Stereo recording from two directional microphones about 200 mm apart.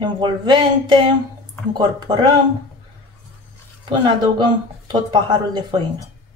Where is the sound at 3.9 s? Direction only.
20° right (ahead or behind).